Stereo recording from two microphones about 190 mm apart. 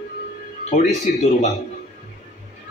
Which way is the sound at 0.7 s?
35° left (ahead or behind).